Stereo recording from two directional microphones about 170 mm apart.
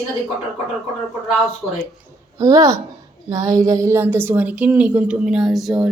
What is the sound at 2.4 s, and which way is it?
A woman's voice, 20° right (ahead or behind).